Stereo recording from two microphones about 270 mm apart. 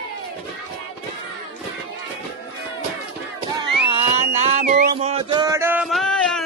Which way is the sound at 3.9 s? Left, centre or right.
Right.